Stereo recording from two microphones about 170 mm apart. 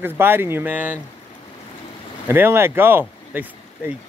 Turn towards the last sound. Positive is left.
turn(degrees=-10)  # may be behind; listen again after turning